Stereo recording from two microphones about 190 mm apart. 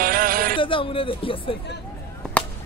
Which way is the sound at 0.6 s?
25° left (ahead or behind).